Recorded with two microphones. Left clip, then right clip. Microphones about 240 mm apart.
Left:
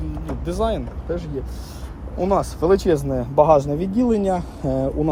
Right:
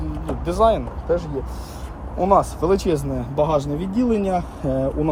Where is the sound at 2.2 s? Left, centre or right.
Centre.